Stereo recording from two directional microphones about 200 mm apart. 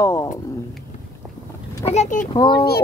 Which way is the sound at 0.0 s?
15° left (ahead or behind).